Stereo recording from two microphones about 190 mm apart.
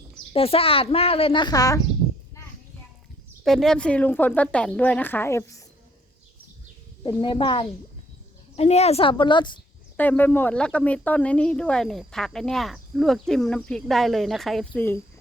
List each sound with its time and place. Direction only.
0.3 s speech: 30° left (ahead or behind)
3.4 s a woman's voice: centre (ahead or behind)
7.0 s speech: 25° left (ahead or behind)
10.0 s speech: 10° left (ahead or behind)